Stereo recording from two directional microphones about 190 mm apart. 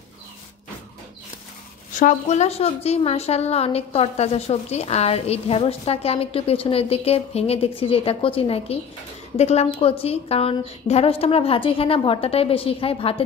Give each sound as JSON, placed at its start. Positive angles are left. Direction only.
{"t": 2.0, "sound": "a woman's voice", "side_deg": 40}